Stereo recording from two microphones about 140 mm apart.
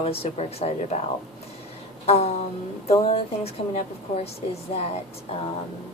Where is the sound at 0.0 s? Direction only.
45° left (ahead or behind).